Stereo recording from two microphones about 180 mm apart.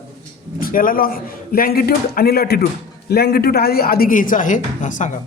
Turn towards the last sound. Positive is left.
turn(degrees=45)  # may be behind; listen again after turning